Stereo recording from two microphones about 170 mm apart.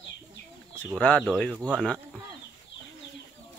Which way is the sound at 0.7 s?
5° left (ahead or behind).